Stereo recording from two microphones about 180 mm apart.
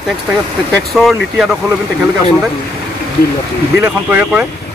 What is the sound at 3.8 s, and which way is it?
Speech, 10° right (ahead or behind).